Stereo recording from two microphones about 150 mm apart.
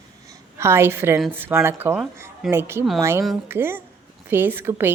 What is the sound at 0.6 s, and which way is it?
A woman's voice, 15° right (ahead or behind).